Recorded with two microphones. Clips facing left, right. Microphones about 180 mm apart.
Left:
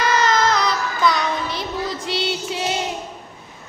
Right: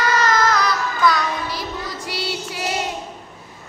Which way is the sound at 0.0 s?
20° left (ahead or behind).